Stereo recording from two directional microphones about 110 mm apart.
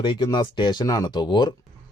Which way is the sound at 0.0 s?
45° left (ahead or behind).